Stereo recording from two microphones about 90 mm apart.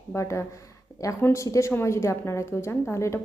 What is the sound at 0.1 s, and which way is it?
A woman's voice, 35° left (ahead or behind).